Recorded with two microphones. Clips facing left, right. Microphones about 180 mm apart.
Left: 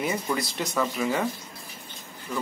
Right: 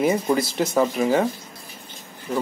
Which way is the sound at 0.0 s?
40° right (ahead or behind).